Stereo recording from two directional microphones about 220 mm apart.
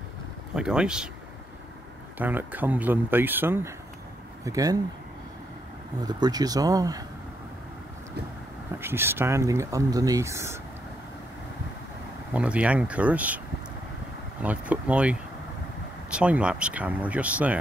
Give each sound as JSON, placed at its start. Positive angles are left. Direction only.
{"t": 0.6, "sound": "speech", "side_deg": -5}
{"t": 2.1, "sound": "speech", "side_deg": -10}
{"t": 6.0, "sound": "speech", "side_deg": -20}
{"t": 8.7, "sound": "speech", "side_deg": -10}
{"t": 12.4, "sound": "speech", "side_deg": -5}
{"t": 14.4, "sound": "speech", "side_deg": -5}